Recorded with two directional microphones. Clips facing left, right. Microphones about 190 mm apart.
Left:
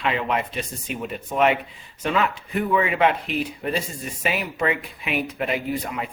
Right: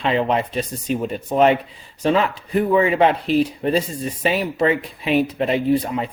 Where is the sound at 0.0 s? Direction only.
30° right (ahead or behind).